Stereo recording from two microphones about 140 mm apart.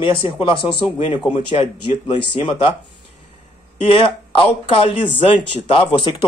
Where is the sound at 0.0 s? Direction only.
40° left (ahead or behind).